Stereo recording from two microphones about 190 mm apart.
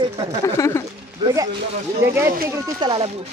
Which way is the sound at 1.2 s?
20° right (ahead or behind).